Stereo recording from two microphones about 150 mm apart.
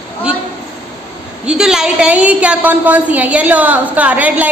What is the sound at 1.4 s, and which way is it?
A woman's voice, 5° right (ahead or behind).